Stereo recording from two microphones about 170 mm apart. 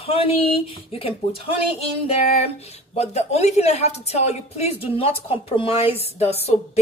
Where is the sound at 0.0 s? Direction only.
35° left (ahead or behind).